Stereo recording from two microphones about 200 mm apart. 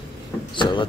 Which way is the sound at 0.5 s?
25° left (ahead or behind).